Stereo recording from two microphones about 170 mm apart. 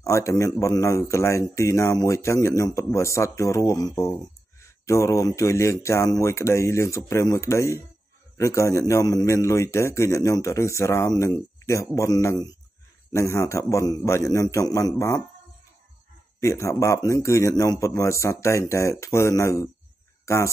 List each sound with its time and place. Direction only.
0.0 s a man's voice: 20° left (ahead or behind)
16.3 s a man's voice: 15° left (ahead or behind)